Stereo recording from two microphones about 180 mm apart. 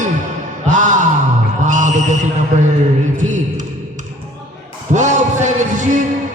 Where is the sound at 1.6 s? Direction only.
45° right (ahead or behind).